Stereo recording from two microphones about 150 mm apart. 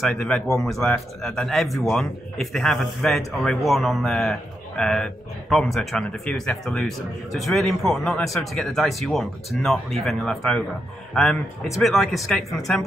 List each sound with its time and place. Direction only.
0.1 s a man's voice: 5° left (ahead or behind)